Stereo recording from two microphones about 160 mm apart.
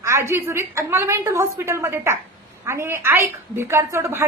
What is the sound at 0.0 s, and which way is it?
A woman's voice, 15° right (ahead or behind).